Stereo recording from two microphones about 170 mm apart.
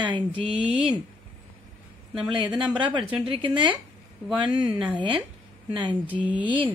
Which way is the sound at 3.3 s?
30° right (ahead or behind).